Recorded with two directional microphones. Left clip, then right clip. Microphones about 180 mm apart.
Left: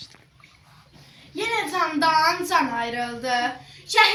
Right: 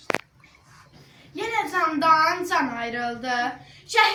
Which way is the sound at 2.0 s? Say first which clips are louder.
Even; 20° right (ahead or behind).